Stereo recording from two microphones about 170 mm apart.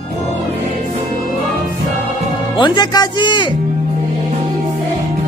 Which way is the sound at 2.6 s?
25° left (ahead or behind).